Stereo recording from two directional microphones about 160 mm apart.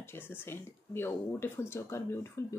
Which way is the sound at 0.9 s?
15° left (ahead or behind).